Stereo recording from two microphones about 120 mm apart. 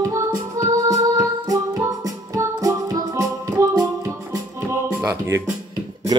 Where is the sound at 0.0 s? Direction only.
25° right (ahead or behind).